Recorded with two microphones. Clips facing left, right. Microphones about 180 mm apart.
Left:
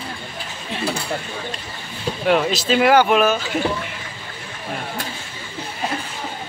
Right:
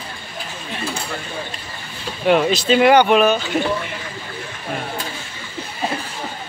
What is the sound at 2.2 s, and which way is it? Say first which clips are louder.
Speech: right 3 dB; centre (ahead or behind).